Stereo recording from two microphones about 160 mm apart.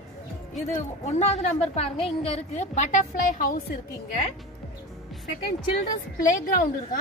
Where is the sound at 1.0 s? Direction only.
40° left (ahead or behind); by 4.3 s 60° left (ahead or behind).